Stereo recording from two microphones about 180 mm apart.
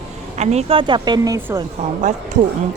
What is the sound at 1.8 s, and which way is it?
Speech, 40° right (ahead or behind).